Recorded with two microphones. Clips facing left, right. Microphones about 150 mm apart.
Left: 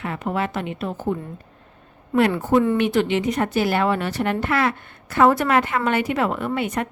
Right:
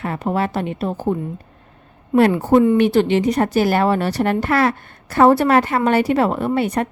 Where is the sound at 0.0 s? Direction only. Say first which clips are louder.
Right 4 dB; 40° right (ahead or behind).